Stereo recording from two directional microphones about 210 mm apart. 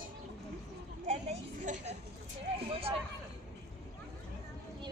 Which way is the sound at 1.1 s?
35° right (ahead or behind).